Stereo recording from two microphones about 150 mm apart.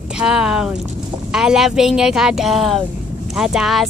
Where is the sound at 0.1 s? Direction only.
5° right (ahead or behind).